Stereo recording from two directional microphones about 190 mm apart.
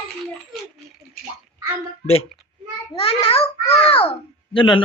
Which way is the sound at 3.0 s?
30° left (ahead or behind).